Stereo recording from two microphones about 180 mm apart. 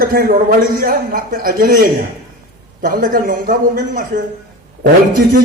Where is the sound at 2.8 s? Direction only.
50° right (ahead or behind).